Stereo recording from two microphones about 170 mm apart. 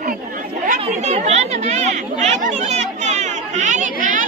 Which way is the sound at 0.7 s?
40° right (ahead or behind).